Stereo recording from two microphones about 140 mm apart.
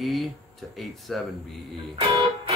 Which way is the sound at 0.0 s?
Centre (ahead or behind).